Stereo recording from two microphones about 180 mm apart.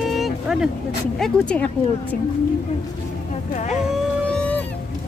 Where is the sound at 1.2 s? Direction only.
5° left (ahead or behind).